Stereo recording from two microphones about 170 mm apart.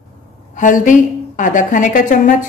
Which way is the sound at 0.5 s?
50° left (ahead or behind).